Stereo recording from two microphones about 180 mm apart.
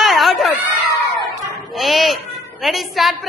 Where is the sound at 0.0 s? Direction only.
Centre (ahead or behind).